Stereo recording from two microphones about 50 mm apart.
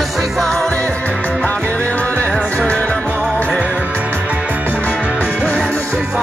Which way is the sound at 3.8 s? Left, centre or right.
Right.